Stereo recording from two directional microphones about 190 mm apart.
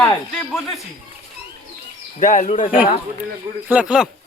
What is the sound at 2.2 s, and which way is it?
Speech, 40° left (ahead or behind).